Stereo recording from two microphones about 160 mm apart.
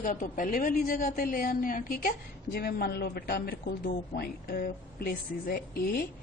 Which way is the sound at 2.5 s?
75° left (ahead or behind).